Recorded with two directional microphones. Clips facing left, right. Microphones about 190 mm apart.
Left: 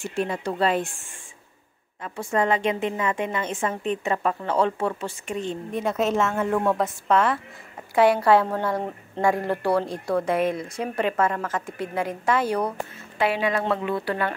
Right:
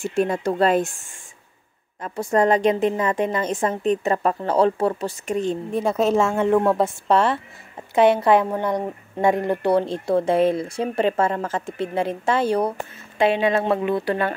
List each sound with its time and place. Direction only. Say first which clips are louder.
0.1 s speech: right 5 dB; 45° right (ahead or behind)
2.0 s a woman's voice: right 5 dB; 40° right (ahead or behind); by 14.3 s 25° right (ahead or behind)